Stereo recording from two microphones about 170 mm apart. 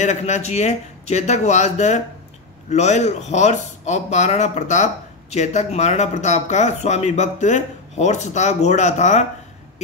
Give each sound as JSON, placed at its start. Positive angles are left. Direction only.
{"t": 0.0, "sound": "speech", "side_deg": 45}